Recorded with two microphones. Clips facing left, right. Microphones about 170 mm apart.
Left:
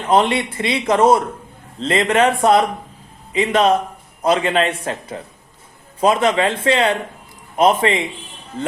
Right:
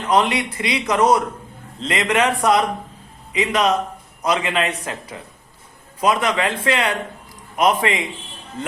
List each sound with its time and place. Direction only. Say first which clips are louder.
0.1 s a man's voice: left 3 dB; 25° left (ahead or behind)